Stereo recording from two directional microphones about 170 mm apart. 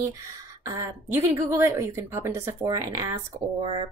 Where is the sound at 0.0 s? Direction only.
20° right (ahead or behind).